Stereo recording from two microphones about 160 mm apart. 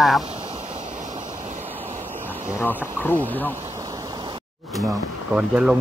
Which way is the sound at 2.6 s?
10° left (ahead or behind).